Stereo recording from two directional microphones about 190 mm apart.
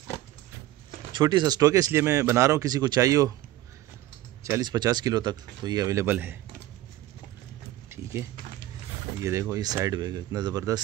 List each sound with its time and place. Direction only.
1.1 s speech: 25° right (ahead or behind)
4.4 s speech: 20° right (ahead or behind)
7.9 s a sound: 15° right (ahead or behind)
9.2 s speech: 15° right (ahead or behind)